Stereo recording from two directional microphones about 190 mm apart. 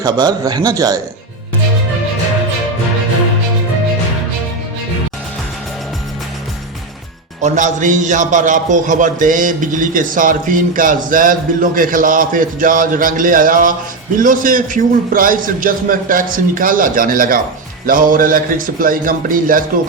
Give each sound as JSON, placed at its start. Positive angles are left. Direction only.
{"t": 0.0, "sound": "a man's voice", "side_deg": -20}
{"t": 7.4, "sound": "a man's voice", "side_deg": -40}